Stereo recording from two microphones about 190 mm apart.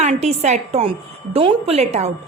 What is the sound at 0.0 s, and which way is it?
A woman's voice, 35° right (ahead or behind).